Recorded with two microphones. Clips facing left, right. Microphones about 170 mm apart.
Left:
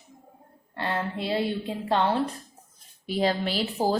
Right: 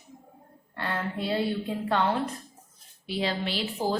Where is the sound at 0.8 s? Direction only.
25° left (ahead or behind).